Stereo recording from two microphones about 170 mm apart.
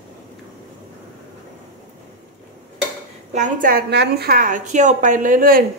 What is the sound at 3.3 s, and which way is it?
A woman's voice, 50° right (ahead or behind).